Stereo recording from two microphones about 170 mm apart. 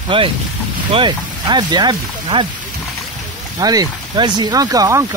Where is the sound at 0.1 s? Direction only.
30° right (ahead or behind).